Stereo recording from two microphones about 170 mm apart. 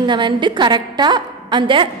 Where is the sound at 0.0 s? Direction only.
25° right (ahead or behind).